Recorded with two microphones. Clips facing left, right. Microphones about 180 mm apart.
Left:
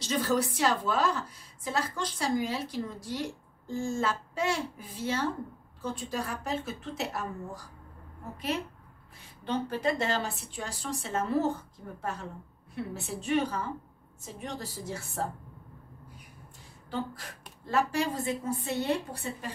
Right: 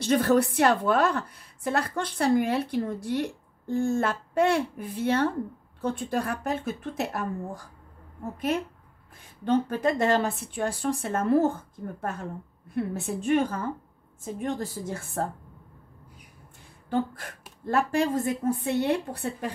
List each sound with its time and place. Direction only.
0.0 s a woman's voice: 60° right (ahead or behind)
16.9 s a woman's voice: 50° right (ahead or behind)